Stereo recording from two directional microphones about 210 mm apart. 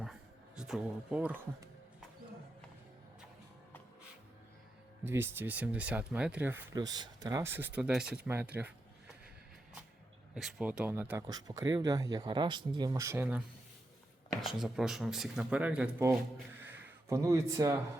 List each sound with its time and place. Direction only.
0.0 s music: 5° right (ahead or behind)
5.0 s speech: 10° right (ahead or behind)
6.7 s speech: 20° right (ahead or behind)
10.3 s speech: 5° right (ahead or behind)
14.4 s speech: centre (ahead or behind)
16.6 s a sound: 10° right (ahead or behind)